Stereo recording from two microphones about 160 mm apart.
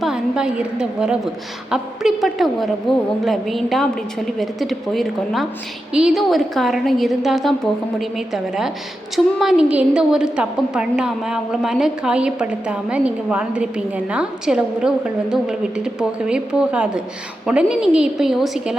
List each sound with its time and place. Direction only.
0.0 s a woman's voice: 5° right (ahead or behind)